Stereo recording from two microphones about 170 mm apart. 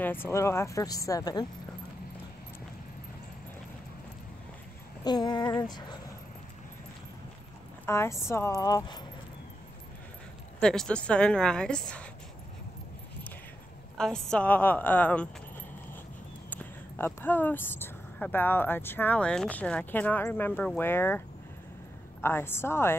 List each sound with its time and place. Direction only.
0.0 s speech: 10° left (ahead or behind)
5.0 s a sound: 25° left (ahead or behind)
7.8 s speech: 15° left (ahead or behind)
10.6 s a woman's voice: 5° left (ahead or behind)
13.9 s speech: 5° left (ahead or behind)
16.4 s speech: 10° left (ahead or behind)
22.2 s speech: 15° left (ahead or behind)